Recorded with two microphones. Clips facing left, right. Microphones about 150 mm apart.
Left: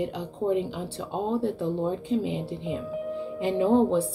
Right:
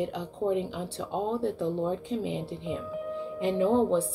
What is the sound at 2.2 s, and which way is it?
Speech, 5° left (ahead or behind).